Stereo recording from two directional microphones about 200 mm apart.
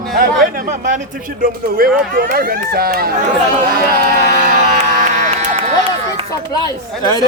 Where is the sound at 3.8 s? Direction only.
50° right (ahead or behind).